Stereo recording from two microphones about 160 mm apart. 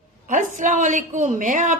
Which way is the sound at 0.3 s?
50° right (ahead or behind).